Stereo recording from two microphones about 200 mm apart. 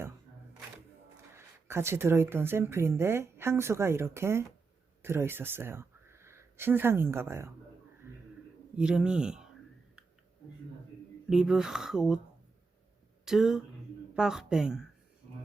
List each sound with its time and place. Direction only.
1.4 s speech: 10° right (ahead or behind)
8.7 s speech: 5° right (ahead or behind)
11.3 s speech: 5° right (ahead or behind)
13.2 s speech: centre (ahead or behind)